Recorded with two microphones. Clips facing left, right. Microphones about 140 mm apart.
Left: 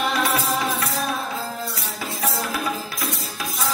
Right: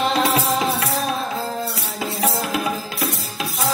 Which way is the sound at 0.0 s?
30° right (ahead or behind).